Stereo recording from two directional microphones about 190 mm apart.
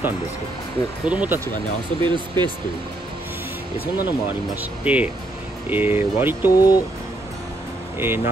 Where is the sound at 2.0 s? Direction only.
25° right (ahead or behind).